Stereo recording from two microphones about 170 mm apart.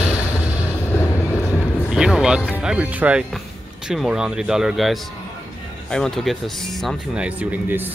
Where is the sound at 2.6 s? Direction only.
10° right (ahead or behind).